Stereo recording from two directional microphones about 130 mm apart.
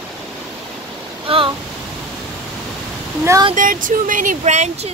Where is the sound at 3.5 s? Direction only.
90° right; by 4.9 s 60° right (ahead or behind).